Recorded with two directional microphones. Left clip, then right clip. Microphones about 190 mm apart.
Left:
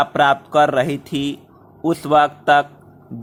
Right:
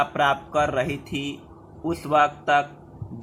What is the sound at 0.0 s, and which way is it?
Speech, 35° left (ahead or behind).